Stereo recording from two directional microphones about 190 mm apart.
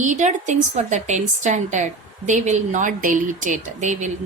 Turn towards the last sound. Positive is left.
turn(degrees=-40)  # may be behind; listen again after turning